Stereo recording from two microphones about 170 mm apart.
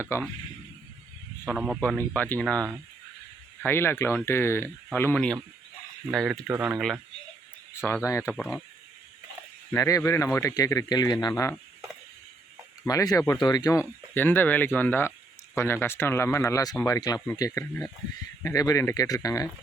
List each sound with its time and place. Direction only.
0.1 s speech: 15° left (ahead or behind)
1.5 s speech: 5° right (ahead or behind)
2.0 s speech: 10° left (ahead or behind)
7.8 s speech: 15° left (ahead or behind)
8.4 s speech: centre (ahead or behind)
9.7 s speech: 20° left (ahead or behind)
12.8 s speech: 20° left (ahead or behind)